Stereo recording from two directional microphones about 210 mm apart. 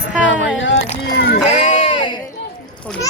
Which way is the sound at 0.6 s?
60° left (ahead or behind).